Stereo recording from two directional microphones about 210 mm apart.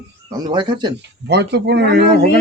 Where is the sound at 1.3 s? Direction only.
55° right (ahead or behind).